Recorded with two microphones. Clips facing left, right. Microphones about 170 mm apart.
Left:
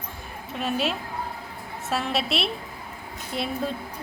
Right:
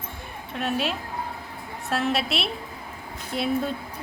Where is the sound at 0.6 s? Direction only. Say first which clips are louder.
Even; centre (ahead or behind).